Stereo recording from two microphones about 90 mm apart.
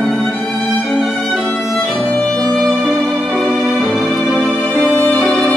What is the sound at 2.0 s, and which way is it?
Music, 15° left (ahead or behind).